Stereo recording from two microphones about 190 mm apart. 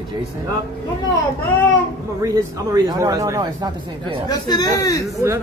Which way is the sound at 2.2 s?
20° right (ahead or behind).